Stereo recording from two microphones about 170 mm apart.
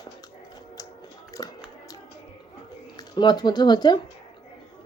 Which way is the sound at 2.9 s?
25° left (ahead or behind).